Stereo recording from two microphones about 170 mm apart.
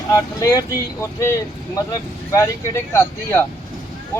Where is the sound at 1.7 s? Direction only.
20° left (ahead or behind).